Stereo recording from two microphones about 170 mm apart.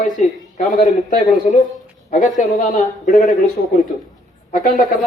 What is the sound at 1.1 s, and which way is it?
Speech, 50° left (ahead or behind).